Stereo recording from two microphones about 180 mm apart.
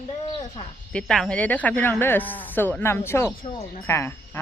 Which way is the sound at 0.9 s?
5° left (ahead or behind).